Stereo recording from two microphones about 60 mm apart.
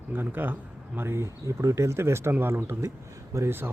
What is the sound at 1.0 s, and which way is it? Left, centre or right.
Speech, right.